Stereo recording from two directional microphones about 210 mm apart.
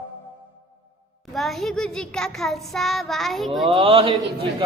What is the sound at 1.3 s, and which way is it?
Child singing, centre (ahead or behind).